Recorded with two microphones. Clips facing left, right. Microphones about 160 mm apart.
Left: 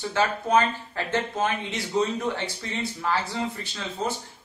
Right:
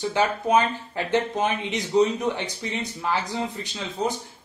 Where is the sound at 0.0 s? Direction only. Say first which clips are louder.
Right 2 dB; 15° right (ahead or behind).